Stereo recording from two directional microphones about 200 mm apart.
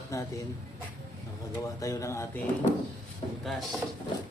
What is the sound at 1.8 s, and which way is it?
Speech, 15° left (ahead or behind).